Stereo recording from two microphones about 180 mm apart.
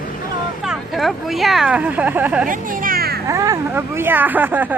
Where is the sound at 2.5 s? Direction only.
50° right (ahead or behind).